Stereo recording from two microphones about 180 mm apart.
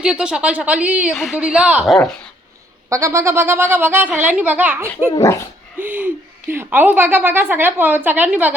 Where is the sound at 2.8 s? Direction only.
15° right (ahead or behind).